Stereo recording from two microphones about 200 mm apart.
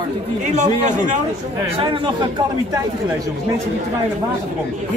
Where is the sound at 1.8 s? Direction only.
25° right (ahead or behind).